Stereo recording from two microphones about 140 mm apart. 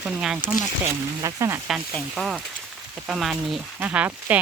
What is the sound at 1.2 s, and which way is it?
Speech, 20° right (ahead or behind).